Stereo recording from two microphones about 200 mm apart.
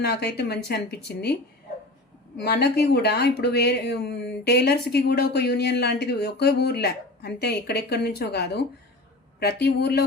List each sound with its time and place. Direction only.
0.0 s speech: 55° left (ahead or behind)
2.4 s speech: 50° left (ahead or behind)